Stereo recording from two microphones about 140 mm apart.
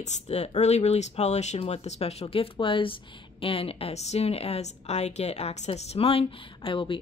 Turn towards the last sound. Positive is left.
turn(degrees=40)  # may be behind; listen again after turning